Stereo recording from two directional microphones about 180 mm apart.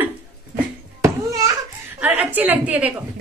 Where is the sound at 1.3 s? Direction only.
20° right (ahead or behind).